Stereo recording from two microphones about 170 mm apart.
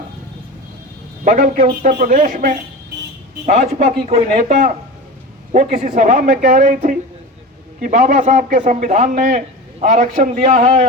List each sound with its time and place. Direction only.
1.2 s a man's voice: 50° right (ahead or behind)